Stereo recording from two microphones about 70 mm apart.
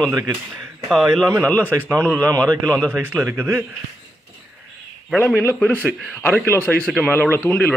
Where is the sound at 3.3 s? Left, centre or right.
Right.